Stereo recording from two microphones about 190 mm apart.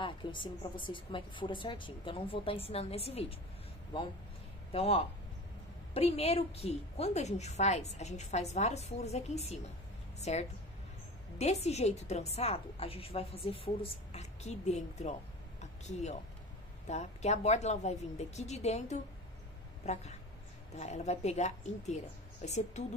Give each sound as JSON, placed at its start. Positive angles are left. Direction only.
{"t": 0.0, "sound": "a woman's voice", "side_deg": 25}
{"t": 4.7, "sound": "a woman's voice", "side_deg": 30}
{"t": 15.6, "sound": "a sound", "side_deg": 35}
{"t": 16.8, "sound": "a woman's voice", "side_deg": 35}